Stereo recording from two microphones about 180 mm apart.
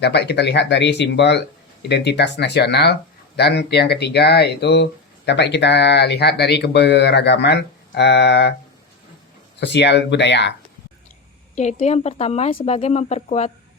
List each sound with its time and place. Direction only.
0.0 s speech: 70° left (ahead or behind)
9.6 s speech: 75° left (ahead or behind)
11.5 s speech: 40° left (ahead or behind)